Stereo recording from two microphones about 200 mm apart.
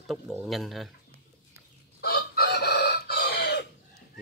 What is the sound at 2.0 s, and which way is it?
Chicken, 50° left (ahead or behind).